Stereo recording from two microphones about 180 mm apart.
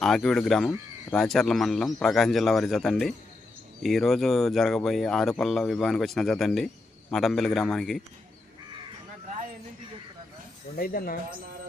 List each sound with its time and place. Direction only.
0.0 s speech: centre (ahead or behind)
10.8 s speech: 55° left (ahead or behind)